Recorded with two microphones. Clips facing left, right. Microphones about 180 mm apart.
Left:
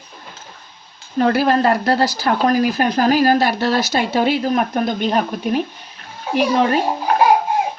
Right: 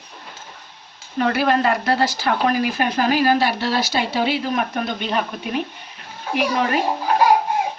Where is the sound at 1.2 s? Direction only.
40° left (ahead or behind).